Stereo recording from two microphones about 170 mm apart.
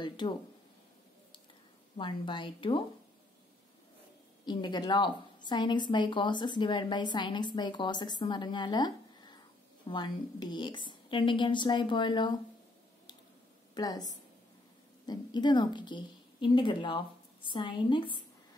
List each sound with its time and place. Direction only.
2.0 s a woman's voice: 30° left (ahead or behind)
4.5 s a woman's voice: 25° left (ahead or behind)
13.7 s a woman's voice: 25° left (ahead or behind)